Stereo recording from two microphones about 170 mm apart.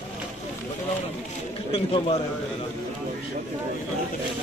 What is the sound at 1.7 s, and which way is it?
Speech, 35° left (ahead or behind).